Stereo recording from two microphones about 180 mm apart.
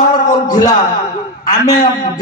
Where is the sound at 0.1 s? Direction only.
20° left (ahead or behind).